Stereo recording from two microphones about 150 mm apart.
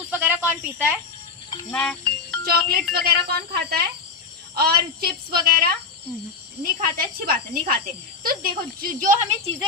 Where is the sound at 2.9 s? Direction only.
90° right.